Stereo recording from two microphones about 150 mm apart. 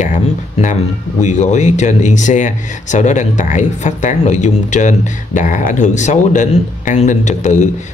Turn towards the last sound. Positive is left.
turn(degrees=50)  # may be behind; listen again after turning